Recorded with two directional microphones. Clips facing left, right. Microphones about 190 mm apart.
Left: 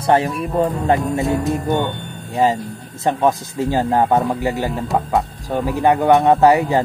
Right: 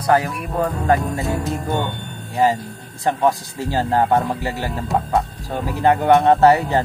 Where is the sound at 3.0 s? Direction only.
20° left (ahead or behind).